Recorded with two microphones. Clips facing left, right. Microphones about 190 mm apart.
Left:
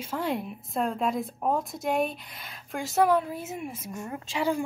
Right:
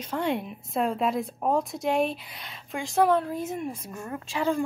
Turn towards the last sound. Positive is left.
turn(degrees=15)  # may be behind; listen again after turning